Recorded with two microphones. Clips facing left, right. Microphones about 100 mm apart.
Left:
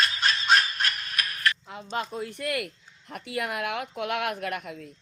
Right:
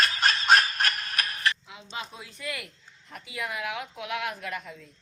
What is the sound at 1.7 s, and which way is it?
Speech, 50° left (ahead or behind).